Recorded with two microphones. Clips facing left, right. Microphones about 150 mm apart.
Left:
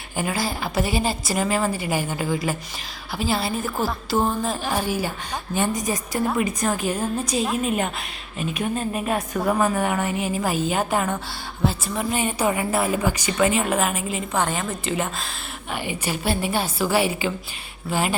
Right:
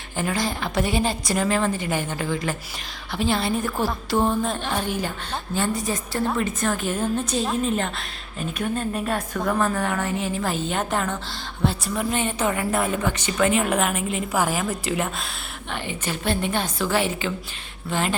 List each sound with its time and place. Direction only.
0.2 s a woman's voice: 5° left (ahead or behind)
5.5 s a woman's voice: 20° left (ahead or behind)
13.3 s a woman's voice: centre (ahead or behind)
15.7 s a woman's voice: 10° left (ahead or behind)